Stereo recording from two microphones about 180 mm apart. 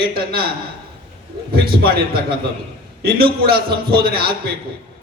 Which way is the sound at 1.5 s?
60° right (ahead or behind).